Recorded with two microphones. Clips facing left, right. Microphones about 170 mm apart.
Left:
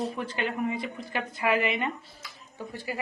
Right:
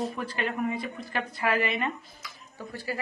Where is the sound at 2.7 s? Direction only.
20° left (ahead or behind).